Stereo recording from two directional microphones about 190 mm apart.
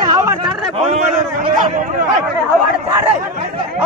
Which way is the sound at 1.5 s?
40° right (ahead or behind).